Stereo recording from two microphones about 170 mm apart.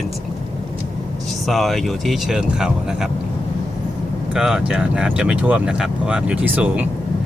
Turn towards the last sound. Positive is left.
turn(degrees=-10)  # may be behind; listen again after turning